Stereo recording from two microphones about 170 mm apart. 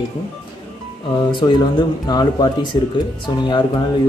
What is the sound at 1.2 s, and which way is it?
Speech, 25° left (ahead or behind).